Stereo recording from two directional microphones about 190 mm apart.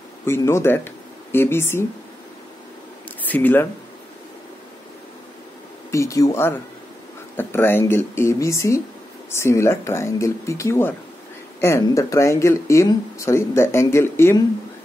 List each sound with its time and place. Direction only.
0.2 s speech: 15° left (ahead or behind)
3.2 s speech: 10° left (ahead or behind)
5.9 s speech: 15° left (ahead or behind)